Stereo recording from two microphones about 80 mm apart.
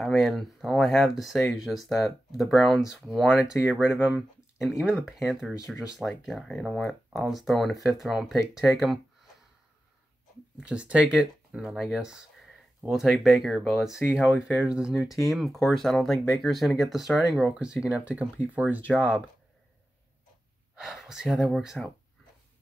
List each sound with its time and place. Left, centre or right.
0.0 s speech: centre
10.6 s speech: centre
20.7 s speech: centre